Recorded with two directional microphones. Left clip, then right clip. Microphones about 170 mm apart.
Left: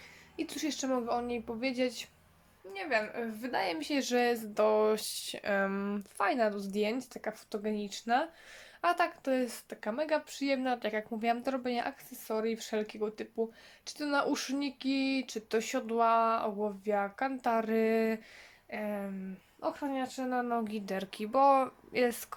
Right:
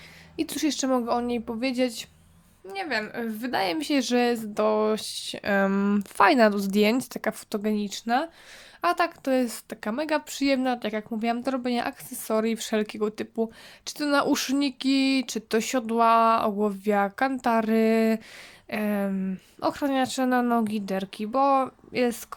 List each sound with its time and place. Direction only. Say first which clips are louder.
0.3 s speech: right 9 dB; 35° right (ahead or behind)
2.6 s speech: right 3 dB; 55° right (ahead or behind); by 18.2 s 30° right (ahead or behind)
18.7 s speech: right 9 dB; 60° right (ahead or behind); by 22.4 s 20° right (ahead or behind)